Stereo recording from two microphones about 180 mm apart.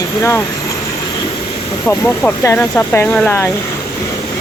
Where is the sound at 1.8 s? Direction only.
10° left (ahead or behind).